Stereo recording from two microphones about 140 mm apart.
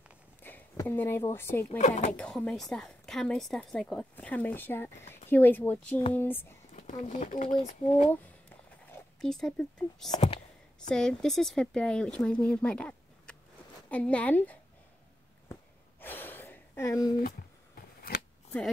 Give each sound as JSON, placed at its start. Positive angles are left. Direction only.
{"t": 0.4, "sound": "a sound", "side_deg": 15}
{"t": 0.7, "sound": "a woman's voice", "side_deg": 15}
{"t": 1.8, "sound": "speech", "side_deg": 55}
{"t": 2.1, "sound": "a woman's voice", "side_deg": 5}
{"t": 6.7, "sound": "speech", "side_deg": 55}
{"t": 9.2, "sound": "a woman's voice", "side_deg": 5}
{"t": 16.0, "sound": "gasp", "side_deg": 15}